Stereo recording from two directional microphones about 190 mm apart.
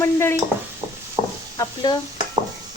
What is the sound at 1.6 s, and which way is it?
Stir, 20° left (ahead or behind).